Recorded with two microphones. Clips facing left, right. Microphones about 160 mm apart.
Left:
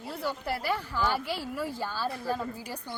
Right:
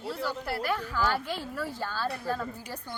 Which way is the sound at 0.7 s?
15° left (ahead or behind).